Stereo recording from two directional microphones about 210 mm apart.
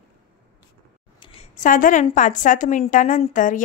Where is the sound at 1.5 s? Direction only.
40° left (ahead or behind).